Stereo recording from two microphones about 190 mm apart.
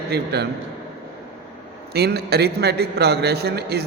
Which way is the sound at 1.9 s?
55° right (ahead or behind).